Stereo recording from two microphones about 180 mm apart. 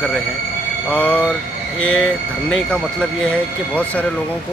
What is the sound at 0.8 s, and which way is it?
A man's voice, 10° left (ahead or behind).